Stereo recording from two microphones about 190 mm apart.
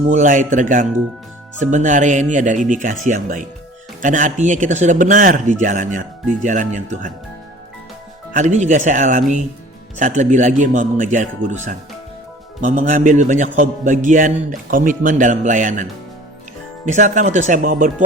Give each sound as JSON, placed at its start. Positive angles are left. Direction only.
{"t": 0.1, "sound": "a man's voice", "side_deg": -40}
{"t": 8.3, "sound": "a man's voice", "side_deg": -40}